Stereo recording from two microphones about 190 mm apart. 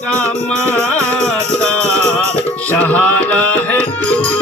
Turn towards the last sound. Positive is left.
turn(degrees=5)  # may be behind; listen again after turning